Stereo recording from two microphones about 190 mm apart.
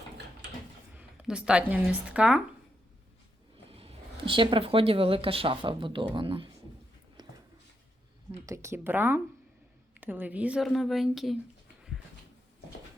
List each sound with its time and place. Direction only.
0.9 s speech: 5° right (ahead or behind)
3.7 s speech: 30° right (ahead or behind)
7.2 s a sound: 20° right (ahead or behind)
8.4 s a woman's voice: 15° right (ahead or behind)